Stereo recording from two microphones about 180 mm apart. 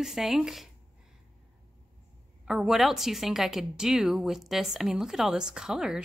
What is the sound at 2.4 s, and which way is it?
A woman's voice, 5° right (ahead or behind).